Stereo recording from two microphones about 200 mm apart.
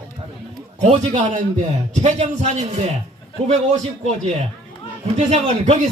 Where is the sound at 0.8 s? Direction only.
35° right (ahead or behind).